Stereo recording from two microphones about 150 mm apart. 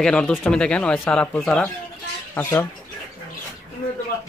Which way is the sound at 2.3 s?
15° left (ahead or behind).